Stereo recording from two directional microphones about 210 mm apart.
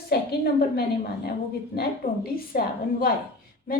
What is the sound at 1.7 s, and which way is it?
A woman's voice, 45° left (ahead or behind).